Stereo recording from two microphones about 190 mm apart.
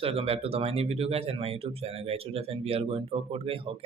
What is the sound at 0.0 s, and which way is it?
Speech, 30° right (ahead or behind).